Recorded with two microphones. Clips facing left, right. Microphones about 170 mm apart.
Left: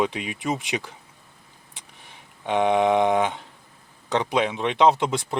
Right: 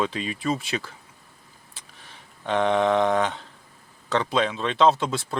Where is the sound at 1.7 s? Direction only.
15° left (ahead or behind).